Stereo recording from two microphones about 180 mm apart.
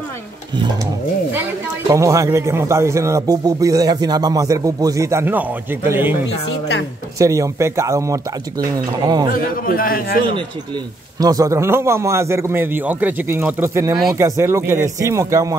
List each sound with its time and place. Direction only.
1.9 s a man's voice: 15° right (ahead or behind)
7.2 s a man's voice: 15° right (ahead or behind)
9.7 s a man's voice: 55° left (ahead or behind)
11.1 s a man's voice: 20° right (ahead or behind)